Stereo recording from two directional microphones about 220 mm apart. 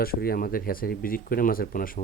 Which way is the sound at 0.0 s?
45° left (ahead or behind).